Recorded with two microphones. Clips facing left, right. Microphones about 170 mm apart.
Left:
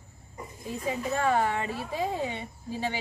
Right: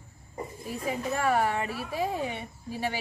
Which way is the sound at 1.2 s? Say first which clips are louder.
Even; 10° right (ahead or behind).